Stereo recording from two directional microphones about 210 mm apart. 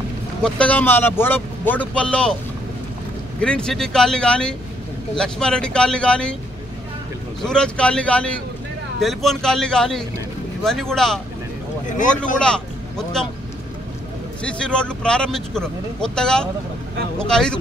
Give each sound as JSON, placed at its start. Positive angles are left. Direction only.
{"t": 0.4, "sound": "speech", "side_deg": 5}
{"t": 3.3, "sound": "speech", "side_deg": 5}
{"t": 7.4, "sound": "speech", "side_deg": 5}
{"t": 12.4, "sound": "speech", "side_deg": 5}
{"t": 14.4, "sound": "speech", "side_deg": 5}